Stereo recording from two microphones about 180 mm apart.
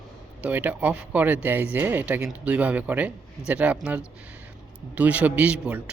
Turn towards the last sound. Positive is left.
turn(degrees=-5)  # may be behind; listen again after turning